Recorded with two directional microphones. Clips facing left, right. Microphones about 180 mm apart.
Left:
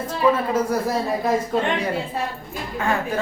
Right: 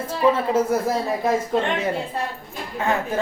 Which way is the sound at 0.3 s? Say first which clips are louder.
Right 1 dB; 25° right (ahead or behind).